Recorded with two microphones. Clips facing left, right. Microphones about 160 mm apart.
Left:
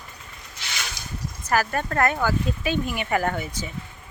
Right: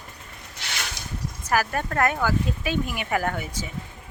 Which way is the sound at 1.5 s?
10° right (ahead or behind).